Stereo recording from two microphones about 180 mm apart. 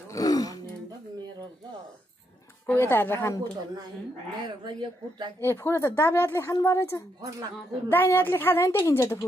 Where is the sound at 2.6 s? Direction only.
10° left (ahead or behind).